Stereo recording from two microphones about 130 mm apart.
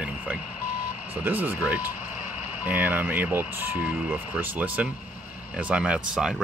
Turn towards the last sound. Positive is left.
turn(degrees=-5)  # may be behind; listen again after turning